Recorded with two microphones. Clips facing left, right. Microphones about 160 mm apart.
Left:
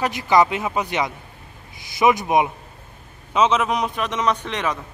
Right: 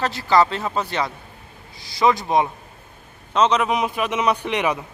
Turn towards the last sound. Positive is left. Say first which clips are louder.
# right 3 dB
turn(degrees=-15)  # may be behind; listen again after turning